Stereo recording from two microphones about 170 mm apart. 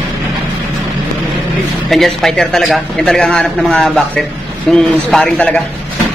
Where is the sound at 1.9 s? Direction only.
Centre (ahead or behind).